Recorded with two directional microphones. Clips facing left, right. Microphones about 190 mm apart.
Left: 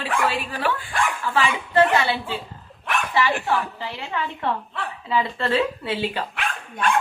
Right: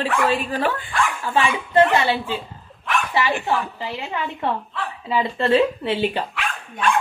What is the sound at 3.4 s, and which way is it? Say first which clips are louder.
A woman's voice: right 1 dB; 20° right (ahead or behind).